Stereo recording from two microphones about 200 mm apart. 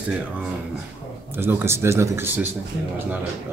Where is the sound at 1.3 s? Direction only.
10° right (ahead or behind).